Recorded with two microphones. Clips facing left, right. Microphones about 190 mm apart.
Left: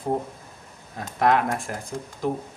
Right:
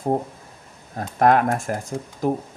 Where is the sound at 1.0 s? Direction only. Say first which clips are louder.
Right 4 dB; 45° right (ahead or behind).